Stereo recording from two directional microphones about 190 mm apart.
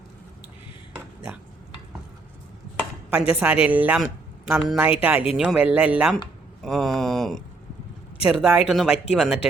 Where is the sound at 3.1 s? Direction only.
5° right (ahead or behind).